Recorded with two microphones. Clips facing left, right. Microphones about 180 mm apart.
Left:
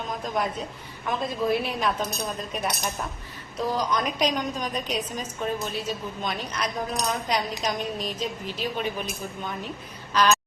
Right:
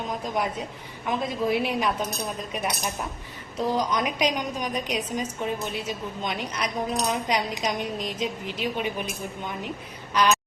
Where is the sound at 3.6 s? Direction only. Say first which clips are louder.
Right 1 dB; 15° right (ahead or behind).